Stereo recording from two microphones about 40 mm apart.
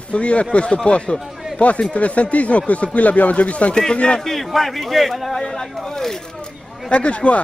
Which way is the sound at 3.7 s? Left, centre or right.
Left.